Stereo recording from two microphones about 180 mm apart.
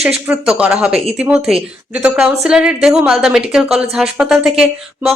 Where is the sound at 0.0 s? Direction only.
5° right (ahead or behind).